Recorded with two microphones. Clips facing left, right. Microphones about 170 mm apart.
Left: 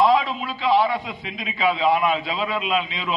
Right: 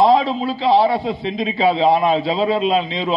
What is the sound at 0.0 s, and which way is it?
A man's voice, 35° right (ahead or behind).